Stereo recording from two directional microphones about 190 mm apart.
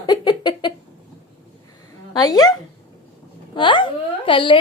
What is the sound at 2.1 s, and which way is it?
Speech, 20° left (ahead or behind).